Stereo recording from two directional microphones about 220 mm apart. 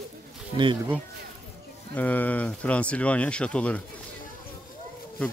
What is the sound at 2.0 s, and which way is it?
Speech, 5° left (ahead or behind).